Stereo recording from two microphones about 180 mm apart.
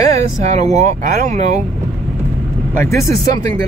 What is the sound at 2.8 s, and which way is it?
Speech, 15° left (ahead or behind).